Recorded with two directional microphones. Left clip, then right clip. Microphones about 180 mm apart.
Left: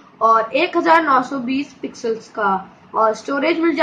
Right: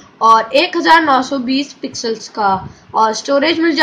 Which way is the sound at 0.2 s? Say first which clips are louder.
Right 5 dB; 50° right (ahead or behind).